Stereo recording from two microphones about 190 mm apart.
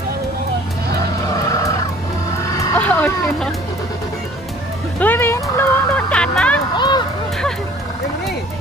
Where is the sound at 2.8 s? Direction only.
10° left (ahead or behind).